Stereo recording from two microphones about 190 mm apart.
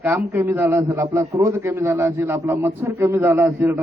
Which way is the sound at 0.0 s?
15° right (ahead or behind).